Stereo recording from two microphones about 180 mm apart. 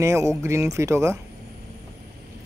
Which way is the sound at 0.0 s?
15° right (ahead or behind).